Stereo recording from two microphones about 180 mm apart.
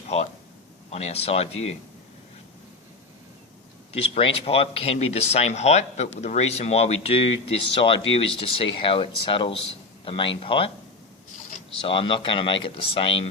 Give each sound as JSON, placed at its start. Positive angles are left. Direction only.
{"t": 0.9, "sound": "speech", "side_deg": 35}
{"t": 3.9, "sound": "speech", "side_deg": 35}
{"t": 11.8, "sound": "speech", "side_deg": 30}